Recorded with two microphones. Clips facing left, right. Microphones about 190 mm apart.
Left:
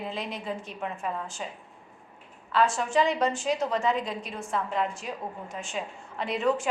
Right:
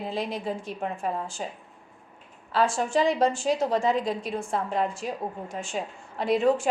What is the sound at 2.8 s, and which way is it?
A woman's voice, 30° right (ahead or behind).